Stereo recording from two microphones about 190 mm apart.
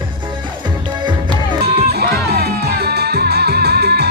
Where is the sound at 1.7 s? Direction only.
55° right (ahead or behind).